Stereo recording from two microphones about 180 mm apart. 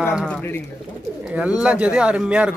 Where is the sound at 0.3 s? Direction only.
10° left (ahead or behind).